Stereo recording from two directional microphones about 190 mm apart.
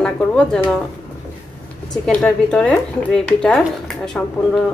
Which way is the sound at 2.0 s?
5° left (ahead or behind).